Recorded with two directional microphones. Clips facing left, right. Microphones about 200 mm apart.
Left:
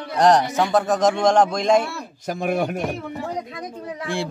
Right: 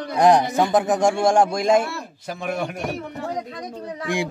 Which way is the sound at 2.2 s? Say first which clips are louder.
Left 5 dB; 40° left (ahead or behind).